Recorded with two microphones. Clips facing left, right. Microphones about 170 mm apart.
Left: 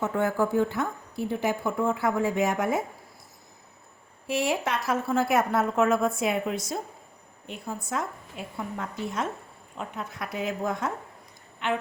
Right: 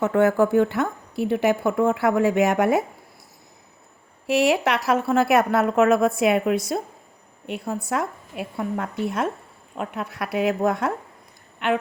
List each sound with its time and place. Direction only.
0.0 s a woman's voice: 70° right (ahead or behind)
4.3 s a woman's voice: 75° right (ahead or behind); by 11.8 s 55° right (ahead or behind)